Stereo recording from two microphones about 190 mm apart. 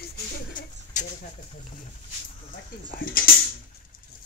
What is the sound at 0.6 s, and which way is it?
Bird, 45° left (ahead or behind).